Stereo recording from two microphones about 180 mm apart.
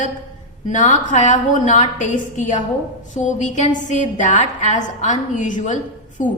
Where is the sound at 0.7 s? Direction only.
45° left (ahead or behind).